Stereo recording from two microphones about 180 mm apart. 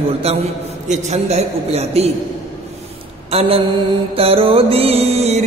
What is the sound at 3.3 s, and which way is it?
Music, 35° right (ahead or behind).